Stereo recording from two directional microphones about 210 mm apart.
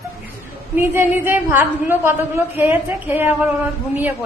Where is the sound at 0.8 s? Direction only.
10° right (ahead or behind).